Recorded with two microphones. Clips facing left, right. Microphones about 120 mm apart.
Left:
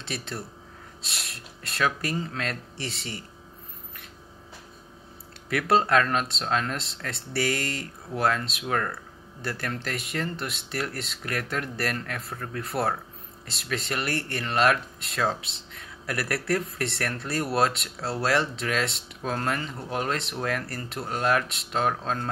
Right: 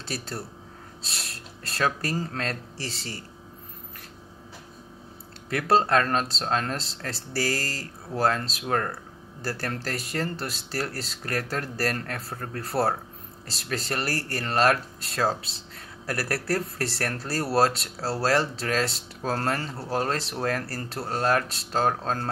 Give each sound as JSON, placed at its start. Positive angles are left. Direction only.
{"t": 0.0, "sound": "speech", "side_deg": -35}
{"t": 5.5, "sound": "speech", "side_deg": -30}